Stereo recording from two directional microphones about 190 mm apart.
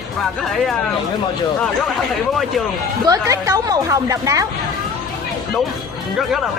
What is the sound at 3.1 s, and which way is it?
A woman's voice, 15° right (ahead or behind).